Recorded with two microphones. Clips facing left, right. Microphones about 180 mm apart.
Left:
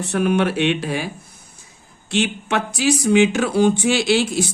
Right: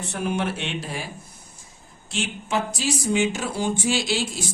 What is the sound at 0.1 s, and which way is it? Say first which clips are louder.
Speech: left 8 dB; 75° left (ahead or behind).